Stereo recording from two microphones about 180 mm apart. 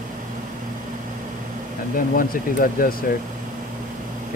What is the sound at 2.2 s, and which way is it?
Speech, 50° left (ahead or behind).